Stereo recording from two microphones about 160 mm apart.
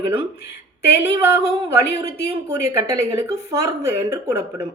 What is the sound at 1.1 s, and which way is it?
Speech, 20° right (ahead or behind).